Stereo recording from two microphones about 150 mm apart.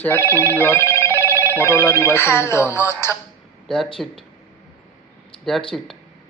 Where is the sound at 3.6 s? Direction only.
Centre (ahead or behind).